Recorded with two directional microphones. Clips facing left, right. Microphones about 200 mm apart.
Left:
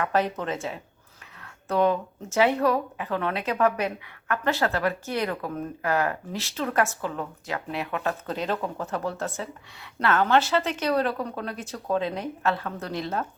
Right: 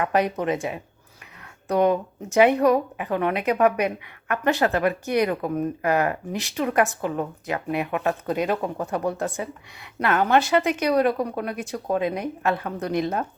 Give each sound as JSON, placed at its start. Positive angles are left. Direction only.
{"t": 0.0, "sound": "speech", "side_deg": -15}